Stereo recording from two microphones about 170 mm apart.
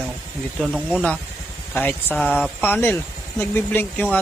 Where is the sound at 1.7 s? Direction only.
10° left (ahead or behind).